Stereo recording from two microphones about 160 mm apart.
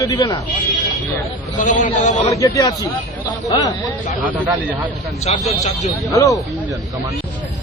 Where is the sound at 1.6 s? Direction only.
50° left (ahead or behind).